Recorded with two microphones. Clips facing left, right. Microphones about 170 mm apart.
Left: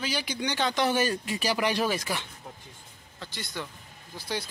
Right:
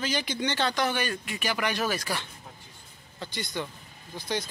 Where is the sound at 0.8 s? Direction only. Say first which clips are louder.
Left 3 dB; 35° left (ahead or behind).